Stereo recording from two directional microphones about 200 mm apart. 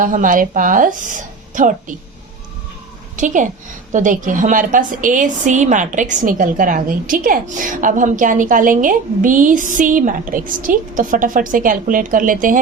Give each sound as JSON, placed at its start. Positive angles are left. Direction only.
{"t": 0.0, "sound": "a woman's voice", "side_deg": -40}
{"t": 3.2, "sound": "a woman's voice", "side_deg": -40}